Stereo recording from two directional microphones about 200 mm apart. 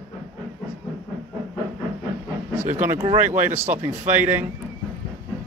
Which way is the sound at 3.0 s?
30° right (ahead or behind).